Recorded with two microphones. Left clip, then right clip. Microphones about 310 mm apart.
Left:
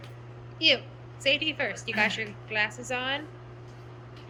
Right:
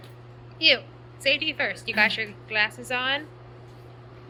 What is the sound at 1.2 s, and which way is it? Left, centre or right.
A woman's voice, centre.